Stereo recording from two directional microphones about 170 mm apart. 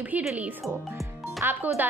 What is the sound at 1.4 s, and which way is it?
Speech, 15° right (ahead or behind).